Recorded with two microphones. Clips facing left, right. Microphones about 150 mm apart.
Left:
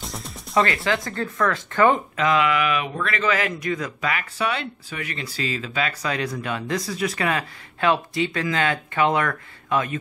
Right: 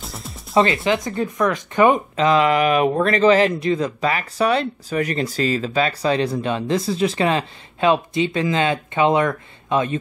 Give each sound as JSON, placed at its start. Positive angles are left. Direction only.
{"t": 0.0, "sound": "music", "side_deg": 0}
{"t": 0.6, "sound": "speech", "side_deg": -20}
{"t": 2.1, "sound": "speech", "side_deg": -30}